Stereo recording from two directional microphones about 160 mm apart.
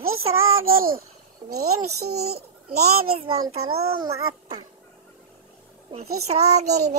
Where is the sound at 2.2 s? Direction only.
40° right (ahead or behind).